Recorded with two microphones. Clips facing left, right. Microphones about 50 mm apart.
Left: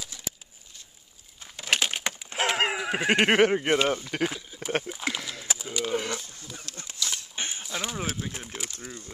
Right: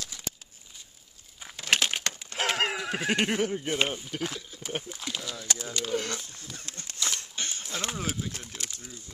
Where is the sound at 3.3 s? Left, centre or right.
Left.